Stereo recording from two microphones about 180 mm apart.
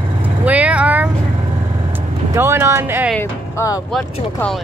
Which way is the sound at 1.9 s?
15° right (ahead or behind).